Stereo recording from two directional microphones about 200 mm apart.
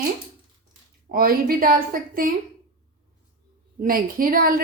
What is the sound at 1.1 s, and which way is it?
Speech, 45° right (ahead or behind).